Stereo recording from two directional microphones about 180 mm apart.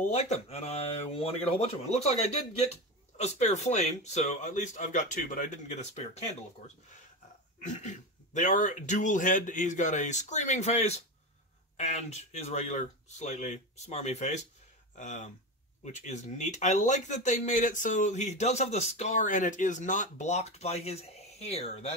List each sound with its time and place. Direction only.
0.1 s speech: 35° left (ahead or behind)
7.6 s speech: 40° left (ahead or behind)